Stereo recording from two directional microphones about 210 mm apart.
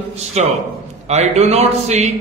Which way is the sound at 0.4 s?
30° right (ahead or behind).